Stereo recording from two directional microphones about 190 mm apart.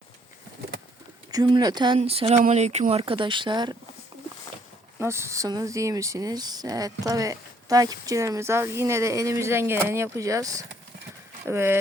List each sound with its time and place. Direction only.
1.3 s speech: 20° right (ahead or behind)
4.9 s speech: 15° right (ahead or behind)